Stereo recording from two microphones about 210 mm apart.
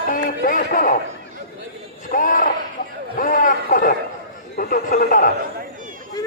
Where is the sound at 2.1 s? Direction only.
40° left (ahead or behind).